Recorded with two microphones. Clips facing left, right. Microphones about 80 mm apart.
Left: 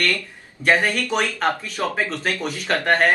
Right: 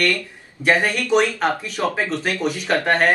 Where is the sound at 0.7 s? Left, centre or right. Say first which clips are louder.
Even; right.